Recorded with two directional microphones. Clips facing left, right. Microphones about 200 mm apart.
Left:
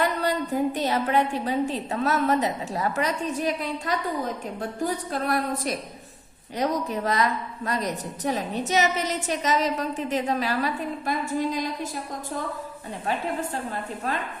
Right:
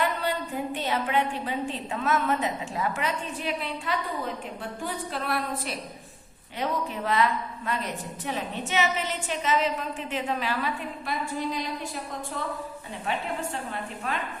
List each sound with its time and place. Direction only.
0.0 s a woman's voice: 40° left (ahead or behind)
13.1 s a woman's voice: 35° left (ahead or behind)